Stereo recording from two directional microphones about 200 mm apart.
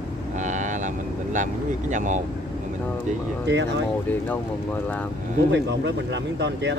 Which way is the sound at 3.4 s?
60° right (ahead or behind).